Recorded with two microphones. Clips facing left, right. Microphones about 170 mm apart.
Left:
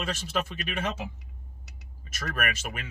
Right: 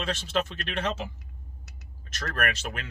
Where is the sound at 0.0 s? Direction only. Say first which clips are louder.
Right 2 dB; 10° left (ahead or behind).